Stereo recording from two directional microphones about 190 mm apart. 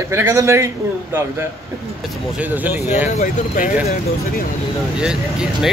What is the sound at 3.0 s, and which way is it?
Speech, 40° left (ahead or behind).